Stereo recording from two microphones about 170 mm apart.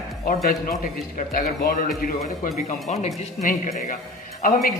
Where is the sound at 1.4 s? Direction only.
60° left (ahead or behind).